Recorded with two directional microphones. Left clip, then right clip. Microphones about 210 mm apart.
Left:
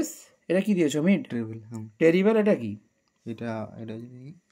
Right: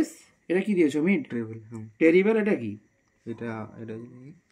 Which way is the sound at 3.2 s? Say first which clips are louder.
Left 1 dB; 35° left (ahead or behind).